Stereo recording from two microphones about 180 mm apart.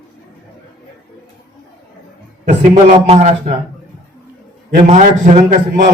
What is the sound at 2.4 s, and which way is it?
A man's voice, 35° right (ahead or behind).